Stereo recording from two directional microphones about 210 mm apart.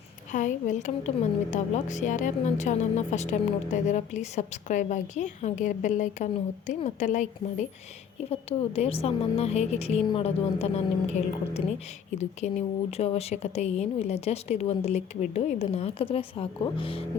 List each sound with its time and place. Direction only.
0.3 s a woman's voice: 35° left (ahead or behind)
8.3 s a woman's voice: 30° left (ahead or behind)